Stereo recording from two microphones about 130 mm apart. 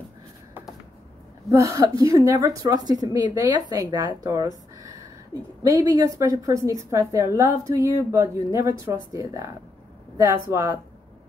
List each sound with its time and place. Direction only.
1.5 s a woman's voice: 25° right (ahead or behind)